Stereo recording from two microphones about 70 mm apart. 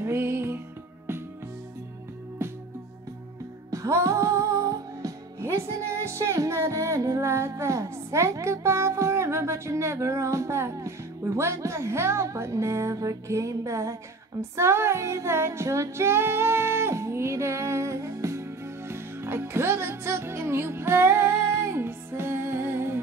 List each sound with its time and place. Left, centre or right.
0.0 s music: right
2.4 s music: right
3.7 s music: right
14.6 s child singing: right